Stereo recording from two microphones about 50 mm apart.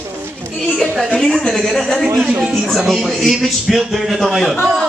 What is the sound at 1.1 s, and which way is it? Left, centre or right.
Speech, centre.